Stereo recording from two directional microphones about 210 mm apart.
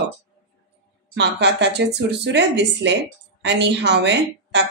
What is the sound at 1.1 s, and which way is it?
Speech, 55° right (ahead or behind).